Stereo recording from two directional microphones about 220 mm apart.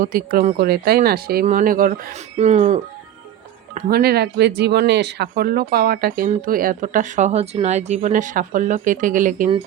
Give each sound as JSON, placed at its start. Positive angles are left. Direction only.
{"t": 0.0, "sound": "speech", "side_deg": -40}
{"t": 3.8, "sound": "speech", "side_deg": -40}